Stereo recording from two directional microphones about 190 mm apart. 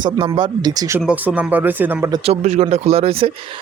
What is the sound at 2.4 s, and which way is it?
Speech, 35° right (ahead or behind).